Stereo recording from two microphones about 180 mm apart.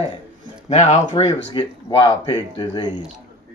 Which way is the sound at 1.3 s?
25° left (ahead or behind).